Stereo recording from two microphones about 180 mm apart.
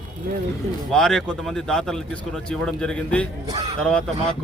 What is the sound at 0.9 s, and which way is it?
Speech, 5° left (ahead or behind).